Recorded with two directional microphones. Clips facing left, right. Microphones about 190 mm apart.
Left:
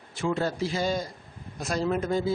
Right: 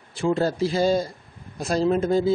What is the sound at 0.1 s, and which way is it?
Speech, 30° right (ahead or behind).